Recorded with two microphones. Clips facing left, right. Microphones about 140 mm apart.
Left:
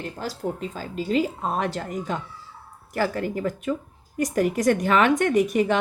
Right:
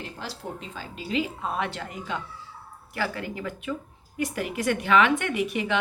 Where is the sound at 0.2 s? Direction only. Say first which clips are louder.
Left 10 dB; 45° left (ahead or behind).